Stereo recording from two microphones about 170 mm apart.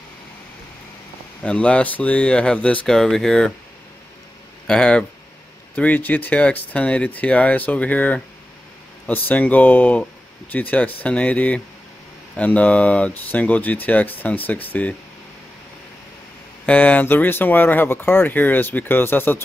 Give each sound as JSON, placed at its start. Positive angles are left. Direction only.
{"t": 1.4, "sound": "speech", "side_deg": 5}
{"t": 4.6, "sound": "speech", "side_deg": 5}
{"t": 16.6, "sound": "speech", "side_deg": 10}